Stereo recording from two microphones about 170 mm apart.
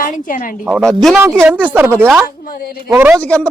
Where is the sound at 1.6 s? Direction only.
10° right (ahead or behind).